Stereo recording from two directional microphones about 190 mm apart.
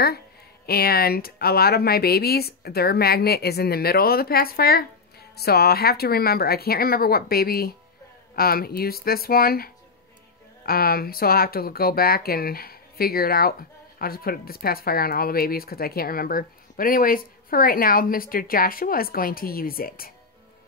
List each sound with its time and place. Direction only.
0.7 s speech: 55° left (ahead or behind)